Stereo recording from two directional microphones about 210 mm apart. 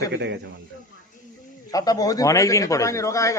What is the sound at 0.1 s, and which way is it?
Speech, 55° right (ahead or behind).